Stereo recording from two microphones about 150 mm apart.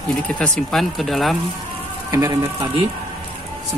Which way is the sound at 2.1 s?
25° right (ahead or behind).